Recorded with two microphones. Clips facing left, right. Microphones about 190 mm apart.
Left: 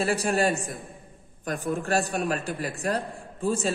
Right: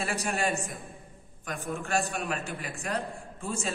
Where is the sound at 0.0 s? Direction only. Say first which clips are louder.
Left 6 dB; 35° left (ahead or behind).